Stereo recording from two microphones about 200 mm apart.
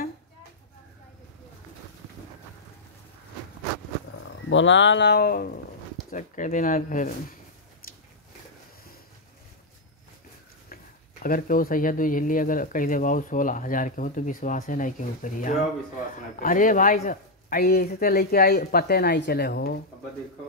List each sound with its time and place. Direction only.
4.5 s speech: 65° left (ahead or behind); by 7.1 s 40° left (ahead or behind)
7.8 s biting: 45° left (ahead or behind)
11.2 s speech: 45° left (ahead or behind)